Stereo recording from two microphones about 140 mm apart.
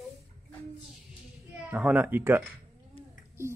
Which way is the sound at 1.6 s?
10° right (ahead or behind).